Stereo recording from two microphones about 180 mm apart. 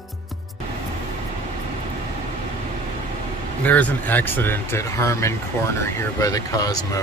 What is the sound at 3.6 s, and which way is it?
Speech, 10° left (ahead or behind).